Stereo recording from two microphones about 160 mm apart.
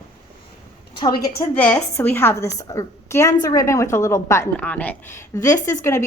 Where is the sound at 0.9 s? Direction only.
25° left (ahead or behind).